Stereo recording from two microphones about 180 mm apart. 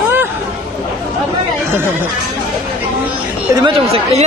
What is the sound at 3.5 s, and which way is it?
Speech, 30° right (ahead or behind).